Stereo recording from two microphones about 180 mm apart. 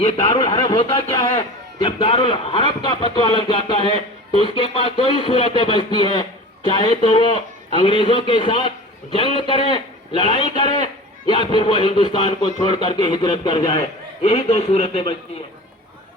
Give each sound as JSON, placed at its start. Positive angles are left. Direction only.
{"t": 0.5, "sound": "a man's voice", "side_deg": 25}